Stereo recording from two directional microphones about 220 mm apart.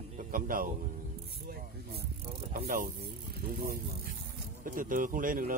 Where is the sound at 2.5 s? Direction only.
40° right (ahead or behind).